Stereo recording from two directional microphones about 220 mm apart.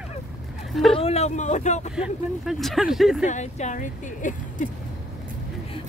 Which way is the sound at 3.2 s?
30° left (ahead or behind).